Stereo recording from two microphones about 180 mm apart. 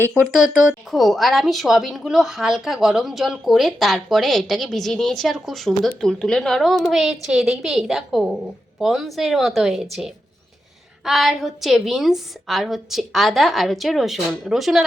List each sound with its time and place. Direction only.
0.7 s a woman's voice: centre (ahead or behind)